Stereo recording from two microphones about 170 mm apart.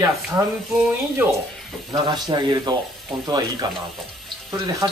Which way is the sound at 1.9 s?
25° right (ahead or behind).